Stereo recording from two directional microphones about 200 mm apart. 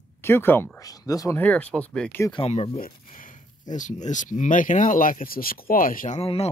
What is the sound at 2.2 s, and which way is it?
Speech, 25° left (ahead or behind).